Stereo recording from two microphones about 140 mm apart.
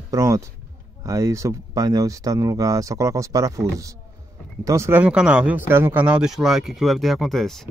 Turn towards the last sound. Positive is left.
turn(degrees=0)  # may be behind; listen again after turning